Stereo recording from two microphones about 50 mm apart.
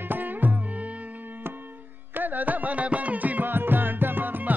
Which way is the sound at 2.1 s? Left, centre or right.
Right.